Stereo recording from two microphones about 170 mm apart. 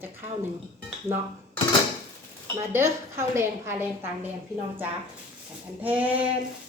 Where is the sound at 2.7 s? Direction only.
15° right (ahead or behind).